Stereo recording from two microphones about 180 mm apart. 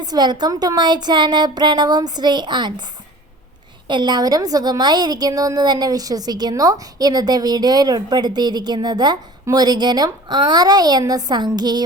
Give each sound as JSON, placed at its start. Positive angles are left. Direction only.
{"t": 0.0, "sound": "a woman's voice", "side_deg": -25}
{"t": 3.8, "sound": "a woman's voice", "side_deg": -25}